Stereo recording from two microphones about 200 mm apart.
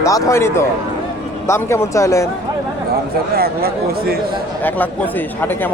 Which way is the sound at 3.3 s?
50° right (ahead or behind).